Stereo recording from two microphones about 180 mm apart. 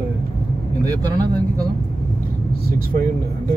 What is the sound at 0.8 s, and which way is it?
Speech, 20° right (ahead or behind).